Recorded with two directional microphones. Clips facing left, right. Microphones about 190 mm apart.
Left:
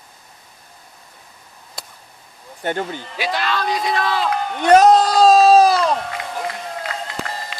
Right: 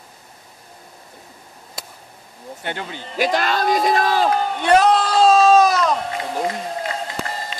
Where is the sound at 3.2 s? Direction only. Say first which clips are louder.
Right 4 dB; 45° right (ahead or behind).